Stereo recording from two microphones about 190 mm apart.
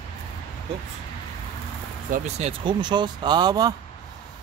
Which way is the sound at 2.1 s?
35° right (ahead or behind).